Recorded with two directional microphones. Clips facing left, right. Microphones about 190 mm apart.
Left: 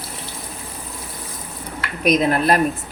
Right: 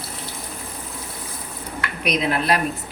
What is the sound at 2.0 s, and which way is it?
Speech, 45° left (ahead or behind).